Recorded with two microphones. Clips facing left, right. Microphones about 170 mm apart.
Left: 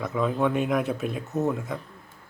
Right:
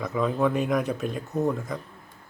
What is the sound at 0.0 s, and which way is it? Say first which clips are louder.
A man's voice: even; centre (ahead or behind).